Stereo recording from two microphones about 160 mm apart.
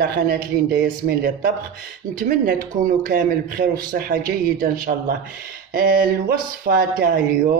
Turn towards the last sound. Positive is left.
turn(degrees=-70)  # may be behind; listen again after turning